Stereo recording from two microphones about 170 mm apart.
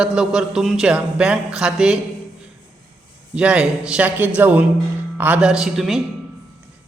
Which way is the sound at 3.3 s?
5° right (ahead or behind).